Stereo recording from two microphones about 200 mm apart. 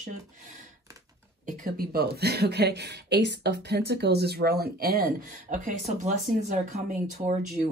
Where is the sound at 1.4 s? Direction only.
45° right (ahead or behind).